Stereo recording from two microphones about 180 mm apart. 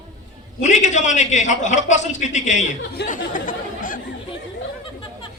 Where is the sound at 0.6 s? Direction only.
40° left (ahead or behind).